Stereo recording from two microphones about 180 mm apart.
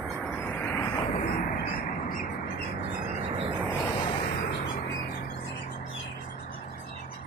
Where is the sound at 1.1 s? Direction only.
45° left (ahead or behind).